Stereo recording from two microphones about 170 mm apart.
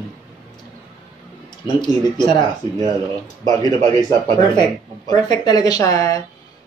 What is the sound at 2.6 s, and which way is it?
Speech, 25° left (ahead or behind).